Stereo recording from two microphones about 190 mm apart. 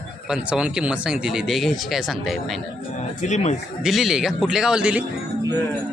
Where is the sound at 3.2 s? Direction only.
40° left (ahead or behind).